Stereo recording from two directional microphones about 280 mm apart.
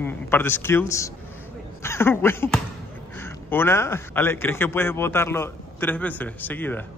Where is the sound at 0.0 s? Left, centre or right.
Centre.